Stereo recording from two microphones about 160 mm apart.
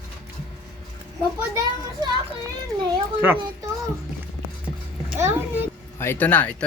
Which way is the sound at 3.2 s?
15° right (ahead or behind).